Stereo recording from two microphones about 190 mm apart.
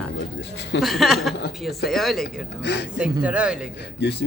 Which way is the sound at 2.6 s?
65° left (ahead or behind).